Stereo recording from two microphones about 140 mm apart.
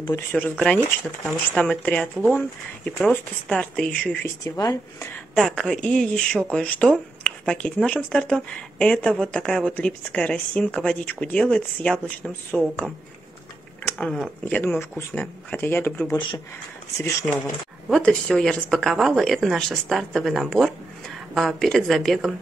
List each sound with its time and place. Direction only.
0.1 s speech: 10° left (ahead or behind)
4.5 s speech: 25° left (ahead or behind)
5.3 s speech: centre (ahead or behind)
13.8 s speech: 5° left (ahead or behind)
14.8 s speech: 15° left (ahead or behind)
17.3 s speech: 15° left (ahead or behind)
17.8 s speech: centre (ahead or behind)